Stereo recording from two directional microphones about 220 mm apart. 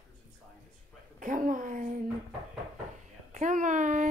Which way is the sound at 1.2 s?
35° right (ahead or behind).